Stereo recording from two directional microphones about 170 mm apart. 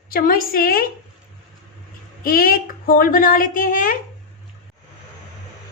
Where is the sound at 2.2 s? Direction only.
55° left (ahead or behind).